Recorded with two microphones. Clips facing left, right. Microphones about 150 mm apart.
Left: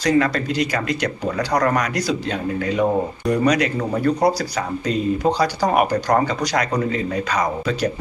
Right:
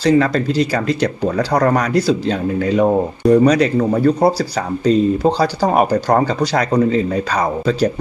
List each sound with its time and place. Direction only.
0.0 s speech: 30° right (ahead or behind)